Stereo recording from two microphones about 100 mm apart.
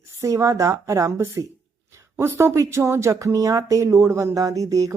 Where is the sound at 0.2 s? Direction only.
30° right (ahead or behind).